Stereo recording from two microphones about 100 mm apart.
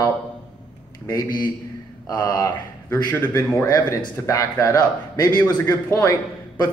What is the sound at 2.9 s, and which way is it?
Speech, 20° left (ahead or behind).